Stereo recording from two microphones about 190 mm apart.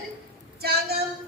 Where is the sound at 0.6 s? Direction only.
55° right (ahead or behind).